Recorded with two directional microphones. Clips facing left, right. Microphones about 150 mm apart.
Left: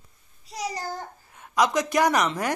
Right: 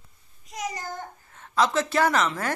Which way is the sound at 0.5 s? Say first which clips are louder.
Left 2 dB; 35° left (ahead or behind).